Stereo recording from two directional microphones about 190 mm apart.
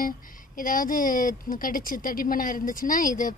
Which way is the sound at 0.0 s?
45° left (ahead or behind).